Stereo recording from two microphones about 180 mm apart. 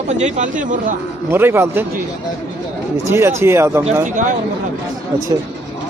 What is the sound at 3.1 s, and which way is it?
Speech, 15° right (ahead or behind).